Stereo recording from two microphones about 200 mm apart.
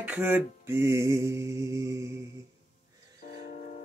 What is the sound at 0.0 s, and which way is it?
Mantra, 10° right (ahead or behind).